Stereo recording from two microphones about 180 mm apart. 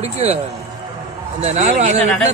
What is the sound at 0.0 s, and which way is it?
Speech, 35° right (ahead or behind).